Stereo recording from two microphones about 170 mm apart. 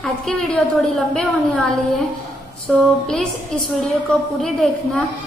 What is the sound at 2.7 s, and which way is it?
Speech, 5° left (ahead or behind).